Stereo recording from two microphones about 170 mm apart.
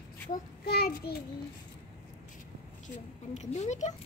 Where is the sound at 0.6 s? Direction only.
65° left (ahead or behind).